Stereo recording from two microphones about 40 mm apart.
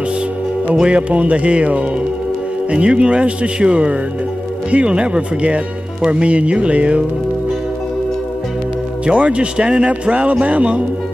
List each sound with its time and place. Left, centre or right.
0.8 s speech: right
9.0 s speech: right